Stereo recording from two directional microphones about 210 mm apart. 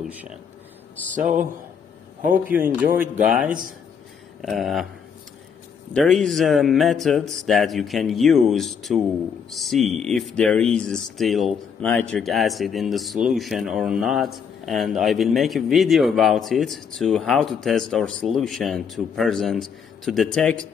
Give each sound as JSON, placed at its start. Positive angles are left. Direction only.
{"t": 0.0, "sound": "speech", "side_deg": -5}
{"t": 1.1, "sound": "a man's voice", "side_deg": -40}
{"t": 3.3, "sound": "speech", "side_deg": 0}
{"t": 5.9, "sound": "speech", "side_deg": 0}